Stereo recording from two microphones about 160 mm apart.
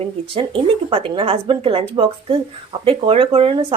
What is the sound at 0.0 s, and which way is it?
Speech, 35° right (ahead or behind).